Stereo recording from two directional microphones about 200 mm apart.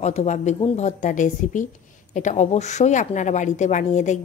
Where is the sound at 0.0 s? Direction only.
35° left (ahead or behind).